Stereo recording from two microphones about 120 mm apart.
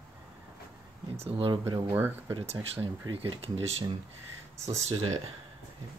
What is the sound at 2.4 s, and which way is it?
Speech, 55° right (ahead or behind).